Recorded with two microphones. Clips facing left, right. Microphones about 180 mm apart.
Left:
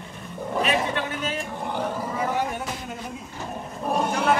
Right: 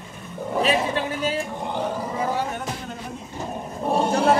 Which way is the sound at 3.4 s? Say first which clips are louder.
Right 4 dB; 30° right (ahead or behind).